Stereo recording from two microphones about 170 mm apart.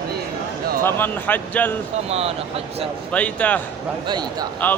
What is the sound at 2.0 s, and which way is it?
Speech, 35° right (ahead or behind).